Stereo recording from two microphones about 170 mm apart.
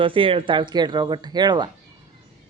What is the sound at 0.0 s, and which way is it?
Speech, 30° right (ahead or behind).